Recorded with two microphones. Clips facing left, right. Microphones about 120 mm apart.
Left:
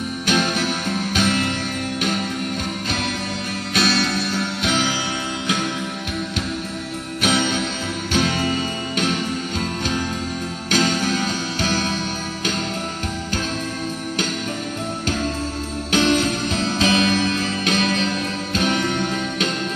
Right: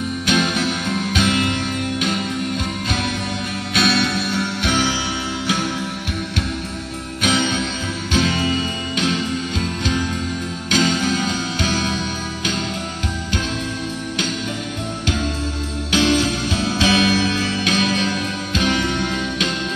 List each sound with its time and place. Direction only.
0.3 s music: centre (ahead or behind)
7.2 s music: 45° left (ahead or behind)
10.7 s music: 45° left (ahead or behind)
15.9 s music: 40° left (ahead or behind)